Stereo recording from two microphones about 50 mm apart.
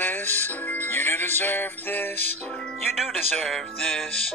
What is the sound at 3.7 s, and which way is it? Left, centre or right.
Music, centre.